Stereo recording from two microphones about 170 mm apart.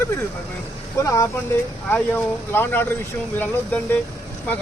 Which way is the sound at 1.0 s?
20° left (ahead or behind).